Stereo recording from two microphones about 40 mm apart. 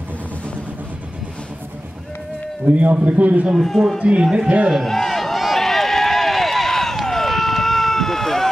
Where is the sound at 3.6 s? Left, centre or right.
Centre.